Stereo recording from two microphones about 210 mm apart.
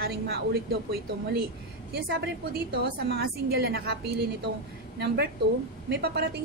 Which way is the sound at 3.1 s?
50° right (ahead or behind).